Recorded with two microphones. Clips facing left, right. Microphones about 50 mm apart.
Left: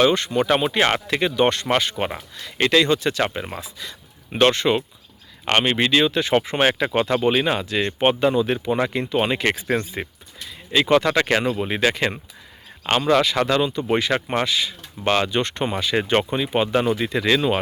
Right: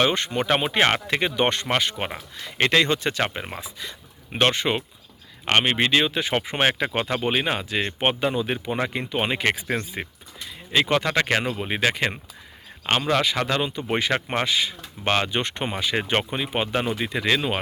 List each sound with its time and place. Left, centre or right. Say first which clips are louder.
0.0 s speech: left 4 dB; right
1.6 s speech: left 3 dB; centre
2.3 s speech: left 1 dB; right
3.2 s speech: left 3 dB; centre
10.7 s speech: left 4 dB; centre
11.4 s speech: left 3 dB; centre